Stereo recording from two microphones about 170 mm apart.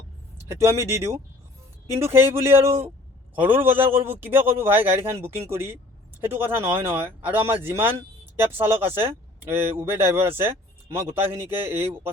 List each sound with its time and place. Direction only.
0.3 s speech: 15° right (ahead or behind)